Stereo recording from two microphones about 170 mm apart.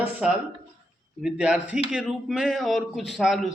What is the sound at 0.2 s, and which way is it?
Speech, 5° right (ahead or behind).